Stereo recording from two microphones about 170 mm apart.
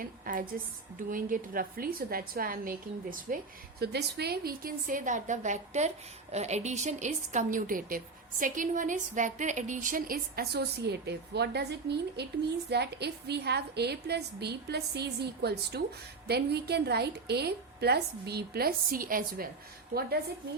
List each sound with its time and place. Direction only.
0.0 s a woman's voice: 55° right (ahead or behind)